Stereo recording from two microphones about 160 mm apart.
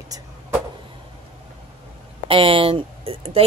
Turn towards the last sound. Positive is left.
turn(degrees=-35)  # may be behind; listen again after turning